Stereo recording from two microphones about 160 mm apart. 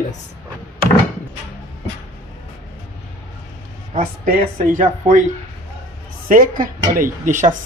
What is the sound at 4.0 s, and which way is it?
Speech, 60° right (ahead or behind).